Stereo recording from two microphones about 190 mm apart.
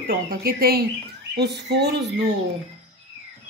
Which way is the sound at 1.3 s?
60° right (ahead or behind).